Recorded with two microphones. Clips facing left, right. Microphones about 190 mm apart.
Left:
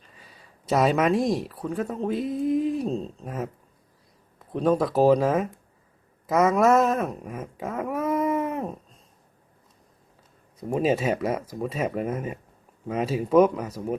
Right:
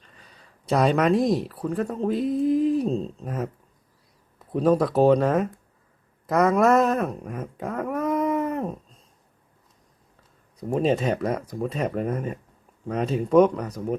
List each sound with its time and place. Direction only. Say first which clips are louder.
0.0 s speech: left 1 dB; 5° left (ahead or behind)
10.6 s speech: right 1 dB; 5° left (ahead or behind)